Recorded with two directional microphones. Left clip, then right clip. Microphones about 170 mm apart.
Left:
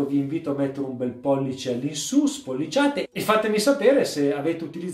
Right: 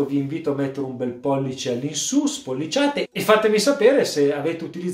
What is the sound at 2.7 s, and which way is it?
Speech, 20° right (ahead or behind).